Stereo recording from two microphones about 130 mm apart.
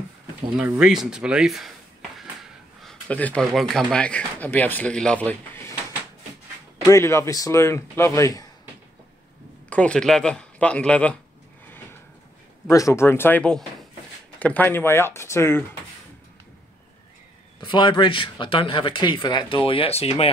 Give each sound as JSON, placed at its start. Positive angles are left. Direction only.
{"t": 0.6, "sound": "speech", "side_deg": -5}
{"t": 6.9, "sound": "speech", "side_deg": 20}
{"t": 9.7, "sound": "speech", "side_deg": 10}
{"t": 11.6, "sound": "drawer open or close", "side_deg": 15}
{"t": 12.6, "sound": "speech", "side_deg": 25}
{"t": 17.6, "sound": "speech", "side_deg": 35}